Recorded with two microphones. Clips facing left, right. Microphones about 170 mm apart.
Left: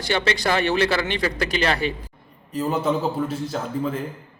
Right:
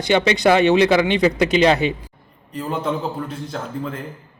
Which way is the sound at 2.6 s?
5° left (ahead or behind).